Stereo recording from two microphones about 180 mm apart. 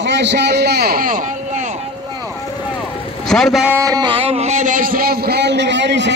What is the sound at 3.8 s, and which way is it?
A man's voice, 20° right (ahead or behind).